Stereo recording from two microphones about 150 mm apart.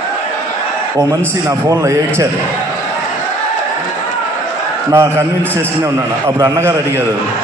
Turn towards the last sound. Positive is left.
turn(degrees=-15)  # may be behind; listen again after turning